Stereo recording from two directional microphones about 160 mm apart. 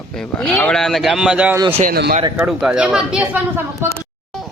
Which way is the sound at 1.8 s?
70° right (ahead or behind).